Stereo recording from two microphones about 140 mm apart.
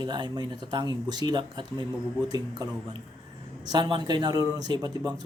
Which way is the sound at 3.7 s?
30° right (ahead or behind).